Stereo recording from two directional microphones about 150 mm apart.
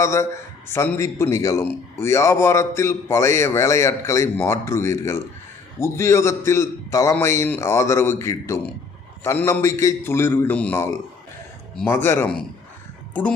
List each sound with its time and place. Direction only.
0.0 s a man's voice: 20° left (ahead or behind)